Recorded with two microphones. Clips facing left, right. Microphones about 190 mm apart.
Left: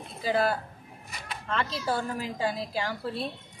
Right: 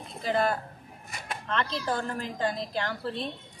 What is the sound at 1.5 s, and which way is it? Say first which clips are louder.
A woman's voice: left 1 dB; 5° left (ahead or behind).